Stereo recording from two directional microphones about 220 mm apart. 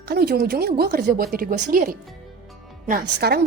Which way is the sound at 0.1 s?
45° right (ahead or behind).